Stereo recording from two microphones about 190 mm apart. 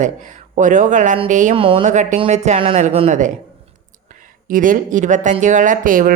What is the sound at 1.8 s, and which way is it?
A woman's voice, 40° right (ahead or behind).